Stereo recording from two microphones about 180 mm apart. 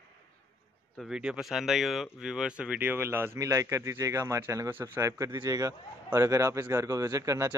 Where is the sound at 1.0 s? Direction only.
5° right (ahead or behind).